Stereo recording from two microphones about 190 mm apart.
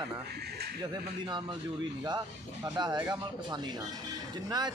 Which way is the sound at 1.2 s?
25° right (ahead or behind).